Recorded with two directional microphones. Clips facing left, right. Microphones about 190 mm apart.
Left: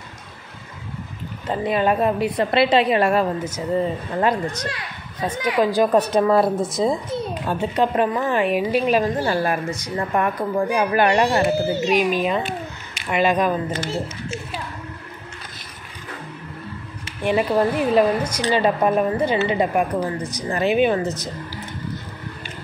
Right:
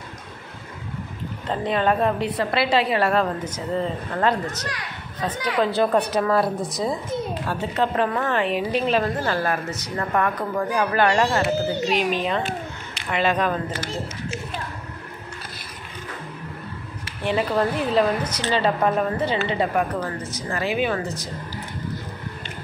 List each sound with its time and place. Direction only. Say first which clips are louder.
1.5 s a woman's voice: left 2 dB; 10° left (ahead or behind)
2.5 s a woman's voice: left 5 dB; 20° left (ahead or behind)
6.1 s a woman's voice: left 4 dB; 25° left (ahead or behind)
17.2 s a woman's voice: left 3 dB; 15° left (ahead or behind)